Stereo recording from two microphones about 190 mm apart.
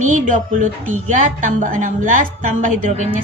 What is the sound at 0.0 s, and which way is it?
A woman's voice, 40° right (ahead or behind).